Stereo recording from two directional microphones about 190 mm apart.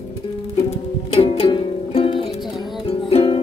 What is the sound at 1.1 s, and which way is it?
Music, 35° left (ahead or behind).